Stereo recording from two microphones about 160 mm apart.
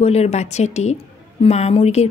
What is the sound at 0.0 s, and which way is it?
Speech, 40° left (ahead or behind).